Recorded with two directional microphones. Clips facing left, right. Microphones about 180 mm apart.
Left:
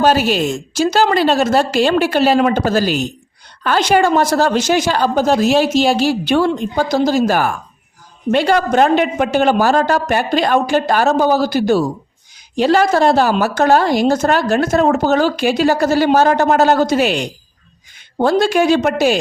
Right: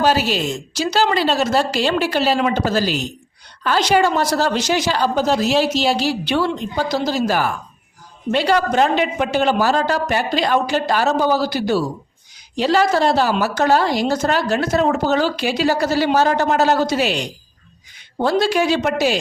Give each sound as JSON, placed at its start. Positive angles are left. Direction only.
{"t": 0.0, "sound": "a woman's voice", "side_deg": 50}